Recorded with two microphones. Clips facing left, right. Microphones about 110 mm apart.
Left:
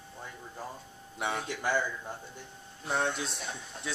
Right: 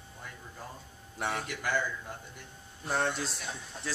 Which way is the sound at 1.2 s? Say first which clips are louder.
Left 1 dB; centre (ahead or behind).